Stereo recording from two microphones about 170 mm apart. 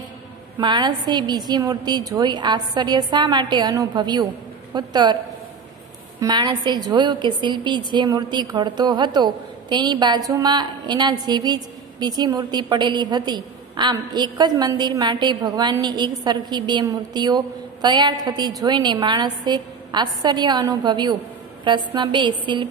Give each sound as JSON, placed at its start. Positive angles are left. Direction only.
{"t": 0.6, "sound": "a woman's voice", "side_deg": -25}